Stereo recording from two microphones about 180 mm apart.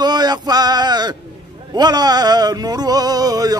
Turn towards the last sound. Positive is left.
turn(degrees=-20)  # may be behind; listen again after turning